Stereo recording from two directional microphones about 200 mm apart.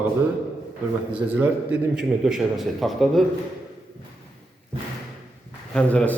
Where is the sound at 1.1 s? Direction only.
5° right (ahead or behind).